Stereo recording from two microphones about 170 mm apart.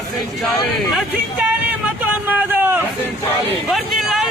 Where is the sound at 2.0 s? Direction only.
10° right (ahead or behind).